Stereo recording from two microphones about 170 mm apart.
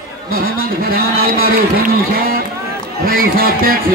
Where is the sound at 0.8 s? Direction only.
60° right (ahead or behind).